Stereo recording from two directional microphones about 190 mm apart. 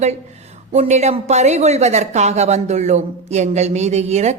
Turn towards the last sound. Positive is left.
turn(degrees=-35)  # may be behind; listen again after turning